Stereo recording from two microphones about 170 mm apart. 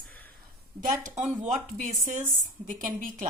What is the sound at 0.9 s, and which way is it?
Speech, 45° right (ahead or behind).